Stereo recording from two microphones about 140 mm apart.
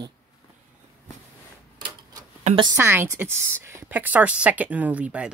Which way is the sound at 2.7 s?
15° right (ahead or behind).